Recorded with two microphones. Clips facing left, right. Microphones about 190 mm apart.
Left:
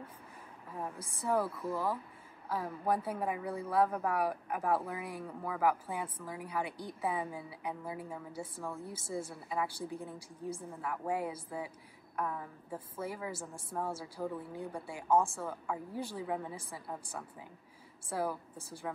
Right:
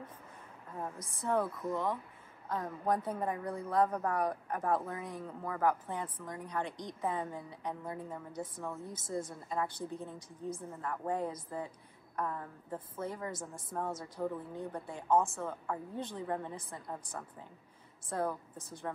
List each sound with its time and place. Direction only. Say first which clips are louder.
0.8 s a woman's voice: left 1 dB; 10° left (ahead or behind)